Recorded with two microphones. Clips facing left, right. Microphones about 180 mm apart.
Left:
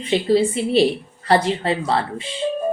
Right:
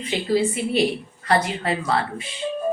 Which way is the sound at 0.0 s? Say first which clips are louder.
Left 4 dB; 25° left (ahead or behind).